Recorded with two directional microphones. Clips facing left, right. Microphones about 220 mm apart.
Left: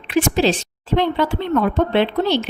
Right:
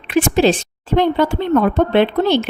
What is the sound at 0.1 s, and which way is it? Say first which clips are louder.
A woman's voice: right 3 dB; 55° right (ahead or behind).